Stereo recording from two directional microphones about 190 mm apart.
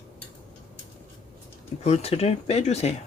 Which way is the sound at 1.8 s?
35° left (ahead or behind).